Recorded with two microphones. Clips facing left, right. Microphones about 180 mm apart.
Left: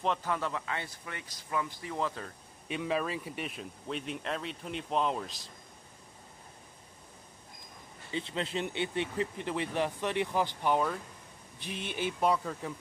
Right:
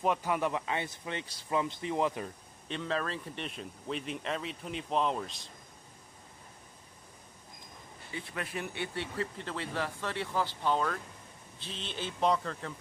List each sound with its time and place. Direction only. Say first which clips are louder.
0.0 s speech: right 2 dB; 10° right (ahead or behind)
2.7 s speech: left 2 dB; 10° left (ahead or behind)
8.1 s speech: left 5 dB; 20° left (ahead or behind)